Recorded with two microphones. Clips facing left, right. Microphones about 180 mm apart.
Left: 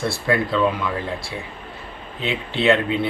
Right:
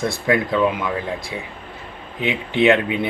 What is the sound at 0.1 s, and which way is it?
Speech, 15° right (ahead or behind).